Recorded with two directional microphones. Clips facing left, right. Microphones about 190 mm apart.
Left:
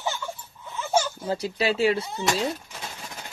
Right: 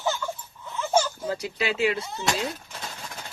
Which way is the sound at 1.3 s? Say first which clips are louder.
Left 5 dB; 35° left (ahead or behind).